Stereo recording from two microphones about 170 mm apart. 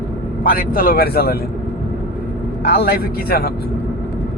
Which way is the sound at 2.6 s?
65° left (ahead or behind).